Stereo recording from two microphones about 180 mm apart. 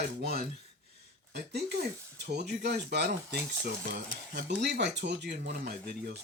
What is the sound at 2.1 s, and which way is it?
Speech, 65° right (ahead or behind).